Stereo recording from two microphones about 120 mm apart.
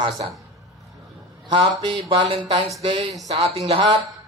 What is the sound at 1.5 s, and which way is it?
Speech, 40° right (ahead or behind).